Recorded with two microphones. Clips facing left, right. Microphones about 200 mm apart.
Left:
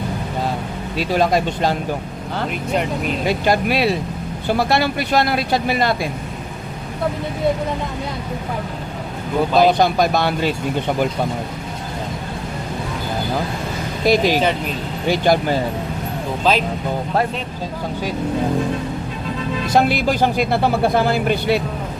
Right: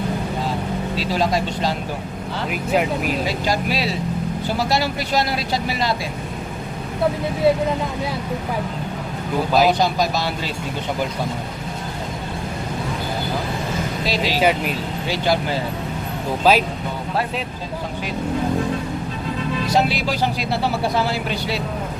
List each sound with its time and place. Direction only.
0.9 s speech: 55° left (ahead or behind)
2.5 s speech: 5° right (ahead or behind)
3.2 s speech: 55° left (ahead or behind)
9.6 s speech: 55° left (ahead or behind)
14.0 s speech: 50° left (ahead or behind)
16.4 s speech: 10° right (ahead or behind)
19.7 s speech: 50° left (ahead or behind)